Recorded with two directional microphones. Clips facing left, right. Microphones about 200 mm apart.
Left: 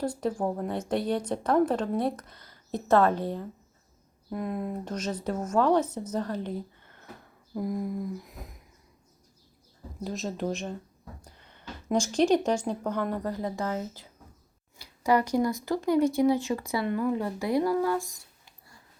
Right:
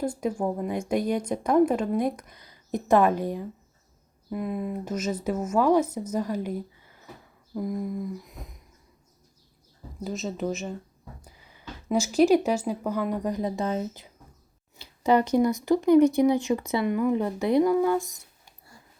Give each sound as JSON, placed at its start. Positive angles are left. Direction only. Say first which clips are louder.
{"t": 0.0, "sound": "a woman's voice", "louder": "right 1 dB", "side_deg": -10}
{"t": 7.5, "sound": "a sound", "louder": "right 1 dB", "side_deg": 0}
{"t": 10.0, "sound": "speech", "louder": "right 2 dB", "side_deg": 0}